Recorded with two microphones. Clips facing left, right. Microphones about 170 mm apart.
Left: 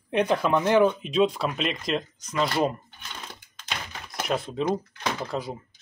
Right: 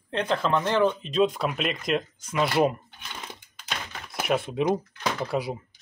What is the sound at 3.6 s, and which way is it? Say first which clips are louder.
Typing: even; 5° right (ahead or behind).